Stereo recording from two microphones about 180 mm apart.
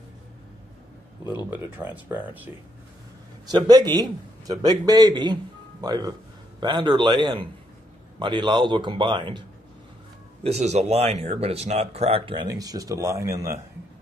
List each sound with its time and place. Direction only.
1.5 s speech: 10° right (ahead or behind)
3.4 s a man's voice: 20° right (ahead or behind)
10.4 s speech: 35° right (ahead or behind); by 13.6 s 15° right (ahead or behind)